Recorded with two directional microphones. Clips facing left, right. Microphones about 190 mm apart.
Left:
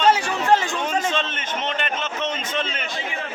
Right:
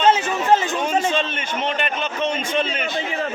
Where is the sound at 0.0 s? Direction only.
20° right (ahead or behind).